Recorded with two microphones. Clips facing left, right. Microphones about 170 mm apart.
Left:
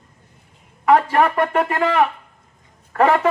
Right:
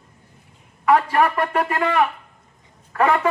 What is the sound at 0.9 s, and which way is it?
Speech, 45° left (ahead or behind).